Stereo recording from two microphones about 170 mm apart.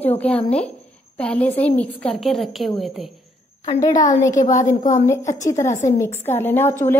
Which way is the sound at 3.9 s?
45° left (ahead or behind).